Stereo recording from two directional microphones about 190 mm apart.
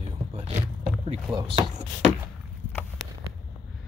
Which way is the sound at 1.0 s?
25° right (ahead or behind).